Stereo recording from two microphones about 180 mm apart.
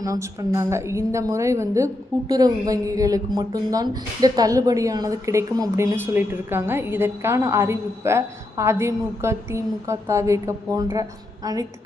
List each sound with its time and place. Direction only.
0.0 s speech: 20° right (ahead or behind)